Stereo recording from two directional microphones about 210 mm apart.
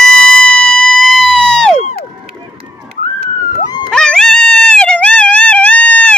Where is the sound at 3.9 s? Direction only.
5° left (ahead or behind).